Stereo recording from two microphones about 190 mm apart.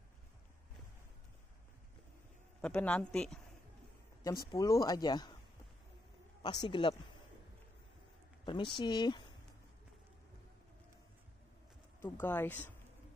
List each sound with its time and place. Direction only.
2.6 s speech: 5° left (ahead or behind)
4.5 s speech: 20° left (ahead or behind)
6.4 s speech: 25° left (ahead or behind)
8.5 s speech: 25° left (ahead or behind)
12.0 s speech: 10° left (ahead or behind)